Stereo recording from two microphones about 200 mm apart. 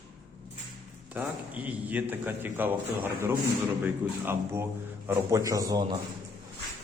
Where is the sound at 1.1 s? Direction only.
5° right (ahead or behind).